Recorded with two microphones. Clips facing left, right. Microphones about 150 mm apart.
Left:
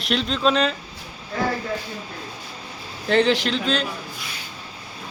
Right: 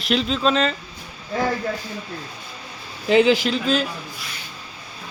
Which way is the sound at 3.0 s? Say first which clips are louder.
Right 3 dB; 5° right (ahead or behind).